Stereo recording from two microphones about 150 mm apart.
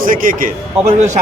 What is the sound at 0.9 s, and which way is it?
Speech, 50° right (ahead or behind).